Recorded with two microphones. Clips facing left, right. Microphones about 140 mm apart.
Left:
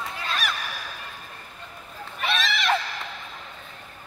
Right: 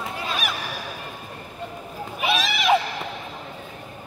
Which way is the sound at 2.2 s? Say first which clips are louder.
Right 3 dB; 5° right (ahead or behind).